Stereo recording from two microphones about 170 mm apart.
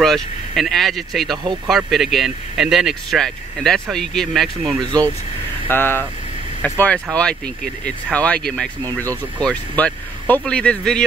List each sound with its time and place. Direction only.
0.0 s speech: centre (ahead or behind)
4.8 s speech: 25° right (ahead or behind)
5.7 s speech: 10° left (ahead or behind)